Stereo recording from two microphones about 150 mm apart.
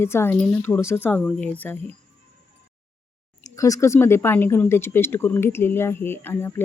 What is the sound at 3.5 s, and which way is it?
A woman's voice, 20° left (ahead or behind).